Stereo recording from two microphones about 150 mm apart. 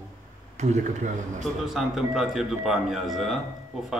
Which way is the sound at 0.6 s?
50° right (ahead or behind).